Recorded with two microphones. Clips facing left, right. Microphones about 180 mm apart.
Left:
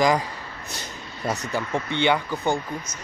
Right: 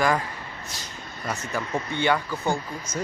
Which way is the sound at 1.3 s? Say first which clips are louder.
Left 2 dB; 35° left (ahead or behind).